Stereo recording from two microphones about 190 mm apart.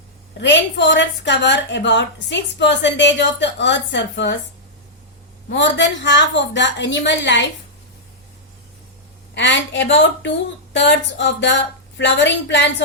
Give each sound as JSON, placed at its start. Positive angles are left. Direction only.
{"t": 0.3, "sound": "a woman's voice", "side_deg": 70}
{"t": 5.5, "sound": "a woman's voice", "side_deg": 65}
{"t": 9.3, "sound": "a woman's voice", "side_deg": 70}